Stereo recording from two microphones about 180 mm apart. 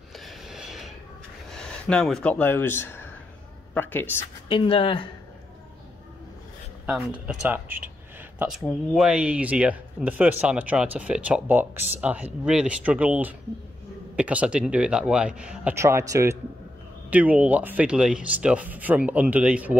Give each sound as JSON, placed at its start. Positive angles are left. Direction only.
{"t": 0.1, "sound": "a sound", "side_deg": 0}
{"t": 1.5, "sound": "speech", "side_deg": 5}
{"t": 4.5, "sound": "speech", "side_deg": 30}
{"t": 7.2, "sound": "speech", "side_deg": -10}